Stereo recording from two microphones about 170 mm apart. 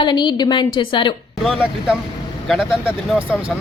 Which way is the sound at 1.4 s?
Centre (ahead or behind).